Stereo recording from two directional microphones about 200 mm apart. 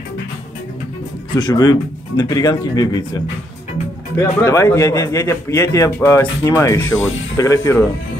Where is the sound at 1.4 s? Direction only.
20° left (ahead or behind).